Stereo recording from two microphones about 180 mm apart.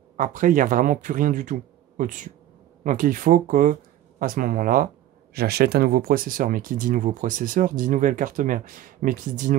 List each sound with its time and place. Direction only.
0.2 s speech: 45° right (ahead or behind)
5.3 s speech: 60° right (ahead or behind)